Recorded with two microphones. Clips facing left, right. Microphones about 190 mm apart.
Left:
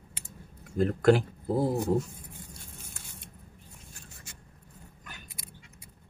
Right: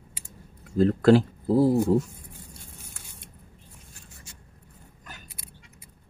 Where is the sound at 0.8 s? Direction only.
30° right (ahead or behind).